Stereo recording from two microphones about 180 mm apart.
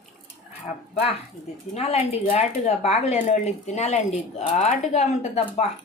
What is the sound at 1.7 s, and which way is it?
Speech, 35° left (ahead or behind).